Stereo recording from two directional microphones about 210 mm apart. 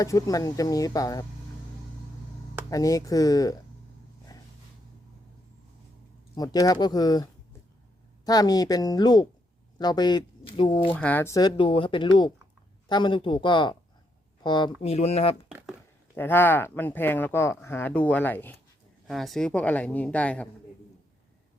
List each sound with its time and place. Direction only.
0.0 s speech: 15° left (ahead or behind)
2.6 s speech: 15° left (ahead or behind)
6.3 s speech: 20° left (ahead or behind)
10.9 s speech: 5° left (ahead or behind); by 15.4 s 30° left (ahead or behind)
15.4 s a sound: centre (ahead or behind)
16.1 s speech: 10° left (ahead or behind)